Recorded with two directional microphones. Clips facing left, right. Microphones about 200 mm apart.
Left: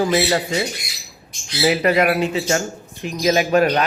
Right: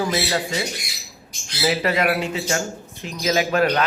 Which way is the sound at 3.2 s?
25° left (ahead or behind).